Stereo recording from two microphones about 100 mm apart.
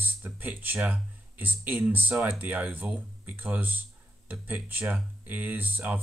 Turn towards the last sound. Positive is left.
turn(degrees=-15)  # may be behind; listen again after turning